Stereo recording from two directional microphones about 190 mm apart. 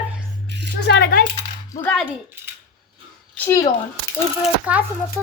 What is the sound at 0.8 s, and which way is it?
Speech, 60° left (ahead or behind).